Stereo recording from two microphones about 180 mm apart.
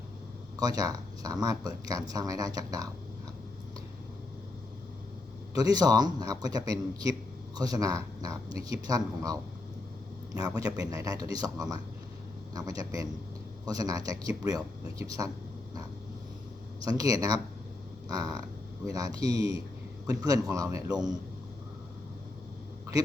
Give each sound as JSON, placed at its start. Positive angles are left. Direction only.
{"t": 0.5, "sound": "a man's voice", "side_deg": -20}
{"t": 5.5, "sound": "a man's voice", "side_deg": -20}
{"t": 16.8, "sound": "a man's voice", "side_deg": -20}